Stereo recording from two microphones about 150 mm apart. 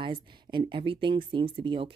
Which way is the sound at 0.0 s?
30° right (ahead or behind).